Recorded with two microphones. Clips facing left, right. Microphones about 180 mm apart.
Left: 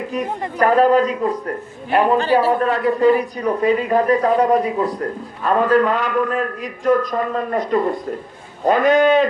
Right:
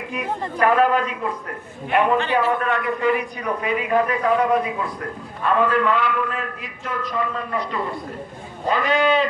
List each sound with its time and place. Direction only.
0.6 s a man's voice: 35° left (ahead or behind)